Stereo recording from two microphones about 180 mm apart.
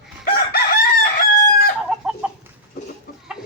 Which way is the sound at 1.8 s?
5° right (ahead or behind).